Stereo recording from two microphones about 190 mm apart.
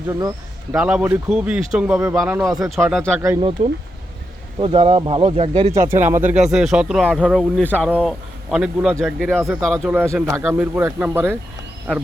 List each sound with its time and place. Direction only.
0.1 s speech: 15° right (ahead or behind)
0.8 s speech: 5° right (ahead or behind)
2.9 s speech: 5° left (ahead or behind)
3.6 s speech: 30° right (ahead or behind)
5.7 s speech: 15° right (ahead or behind)
9.9 s speech: 10° right (ahead or behind)